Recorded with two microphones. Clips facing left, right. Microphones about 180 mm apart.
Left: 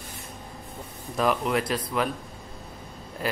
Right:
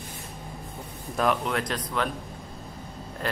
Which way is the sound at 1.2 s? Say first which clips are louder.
Left 1 dB; 5° left (ahead or behind).